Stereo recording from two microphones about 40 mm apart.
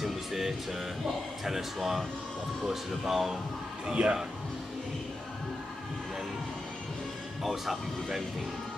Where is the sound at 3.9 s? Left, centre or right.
Right.